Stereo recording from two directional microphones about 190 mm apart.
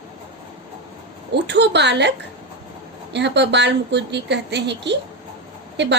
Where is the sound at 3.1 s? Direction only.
65° right (ahead or behind).